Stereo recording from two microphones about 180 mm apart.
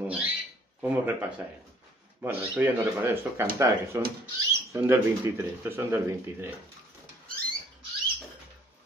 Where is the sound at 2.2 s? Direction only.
10° right (ahead or behind).